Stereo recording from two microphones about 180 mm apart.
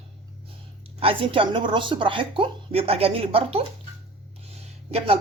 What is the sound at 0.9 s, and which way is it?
A woman's voice, 30° right (ahead or behind).